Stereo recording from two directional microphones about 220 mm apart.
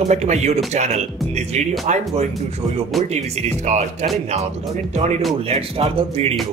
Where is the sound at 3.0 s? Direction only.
30° right (ahead or behind).